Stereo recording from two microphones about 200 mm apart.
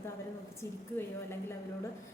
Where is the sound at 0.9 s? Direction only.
10° left (ahead or behind).